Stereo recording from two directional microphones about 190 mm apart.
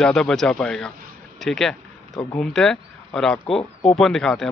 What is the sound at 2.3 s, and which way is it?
Speech, 5° left (ahead or behind).